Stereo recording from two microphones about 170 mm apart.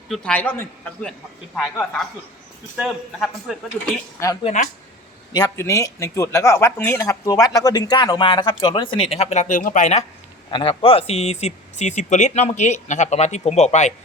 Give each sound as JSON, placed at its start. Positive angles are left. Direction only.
{"t": 0.1, "sound": "a man's voice", "side_deg": 5}
{"t": 1.5, "sound": "speech", "side_deg": 0}
{"t": 4.4, "sound": "speech", "side_deg": 45}
{"t": 5.3, "sound": "speech", "side_deg": 20}
{"t": 10.5, "sound": "speech", "side_deg": 30}